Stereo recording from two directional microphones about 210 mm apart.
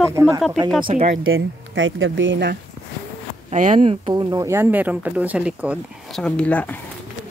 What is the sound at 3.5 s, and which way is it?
Speech, 35° right (ahead or behind).